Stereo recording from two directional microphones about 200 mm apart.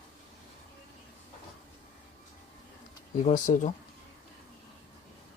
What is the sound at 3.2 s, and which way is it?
Speech, 40° left (ahead or behind).